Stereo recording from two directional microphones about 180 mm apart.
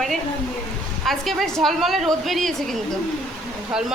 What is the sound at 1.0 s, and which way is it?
A woman's voice, centre (ahead or behind).